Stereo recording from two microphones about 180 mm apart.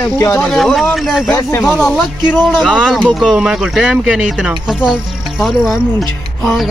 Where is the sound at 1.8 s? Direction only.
Centre (ahead or behind).